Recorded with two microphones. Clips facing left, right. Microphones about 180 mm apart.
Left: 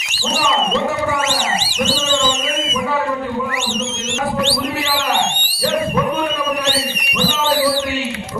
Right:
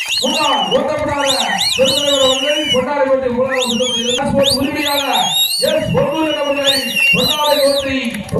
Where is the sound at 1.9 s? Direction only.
60° right (ahead or behind).